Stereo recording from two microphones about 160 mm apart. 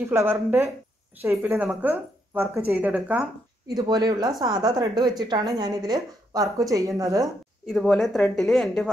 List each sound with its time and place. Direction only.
0.0 s a woman's voice: 15° right (ahead or behind)
3.6 s a woman's voice: 25° right (ahead or behind)
7.6 s speech: 5° left (ahead or behind)